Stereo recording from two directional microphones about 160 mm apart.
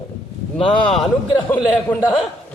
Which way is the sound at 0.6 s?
30° left (ahead or behind).